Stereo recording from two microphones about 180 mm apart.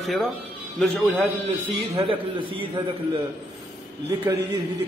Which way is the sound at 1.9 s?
30° right (ahead or behind).